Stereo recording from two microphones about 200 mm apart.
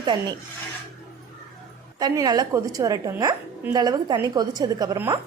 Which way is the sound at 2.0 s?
20° right (ahead or behind).